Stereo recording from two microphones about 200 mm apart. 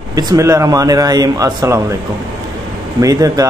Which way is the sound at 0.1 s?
20° right (ahead or behind).